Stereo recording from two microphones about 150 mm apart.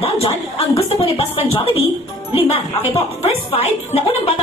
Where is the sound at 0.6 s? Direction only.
40° left (ahead or behind).